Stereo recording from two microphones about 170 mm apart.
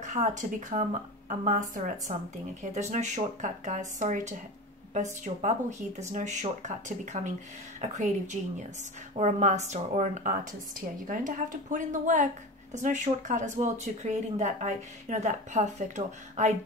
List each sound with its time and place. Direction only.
0.0 s speech: 45° right (ahead or behind)